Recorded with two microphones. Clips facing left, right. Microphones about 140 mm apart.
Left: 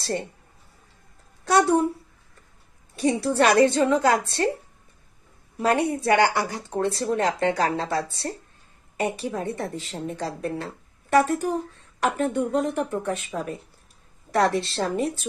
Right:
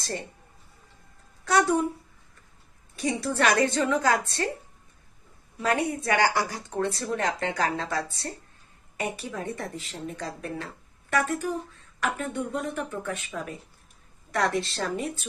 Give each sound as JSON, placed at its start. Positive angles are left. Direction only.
{"t": 1.4, "sound": "speech", "side_deg": 30}
{"t": 3.0, "sound": "speech", "side_deg": 30}
{"t": 5.6, "sound": "speech", "side_deg": 30}